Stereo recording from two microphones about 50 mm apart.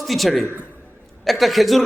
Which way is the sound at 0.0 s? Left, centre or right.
Centre.